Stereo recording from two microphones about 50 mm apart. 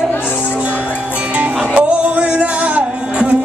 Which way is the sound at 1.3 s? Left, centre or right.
Right.